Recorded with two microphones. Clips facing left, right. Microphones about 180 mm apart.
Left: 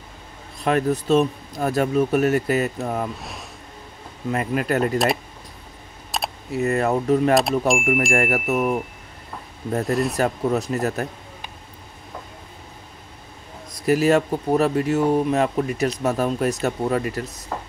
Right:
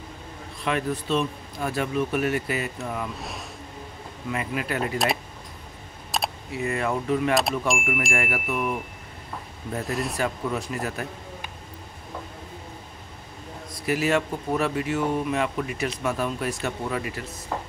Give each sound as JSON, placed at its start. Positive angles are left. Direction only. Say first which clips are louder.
{"t": 0.7, "sound": "speech", "louder": "left 7 dB", "side_deg": 45}
{"t": 3.2, "sound": "speech", "louder": "right 1 dB", "side_deg": 0}
{"t": 4.3, "sound": "speech", "louder": "left 6 dB", "side_deg": 45}
{"t": 4.9, "sound": "speech", "louder": "left 5 dB", "side_deg": 0}
{"t": 6.1, "sound": "keys jangling", "louder": "even", "side_deg": 0}
{"t": 6.5, "sound": "speech", "louder": "left 7 dB", "side_deg": 40}
{"t": 9.8, "sound": "speech", "louder": "left 7 dB", "side_deg": 0}
{"t": 10.1, "sound": "speech", "louder": "left 6 dB", "side_deg": 40}
{"t": 13.8, "sound": "speech", "louder": "left 6 dB", "side_deg": 40}
{"t": 17.5, "sound": "chopping", "louder": "even", "side_deg": 0}